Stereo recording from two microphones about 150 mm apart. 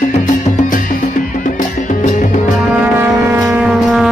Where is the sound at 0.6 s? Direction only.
60° left (ahead or behind).